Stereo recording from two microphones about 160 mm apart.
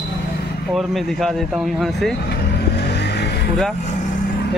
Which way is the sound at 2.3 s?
90° left.